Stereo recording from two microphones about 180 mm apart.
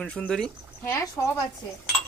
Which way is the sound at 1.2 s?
20° left (ahead or behind).